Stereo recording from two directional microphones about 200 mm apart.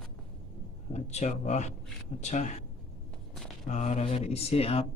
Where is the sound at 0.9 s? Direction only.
35° left (ahead or behind).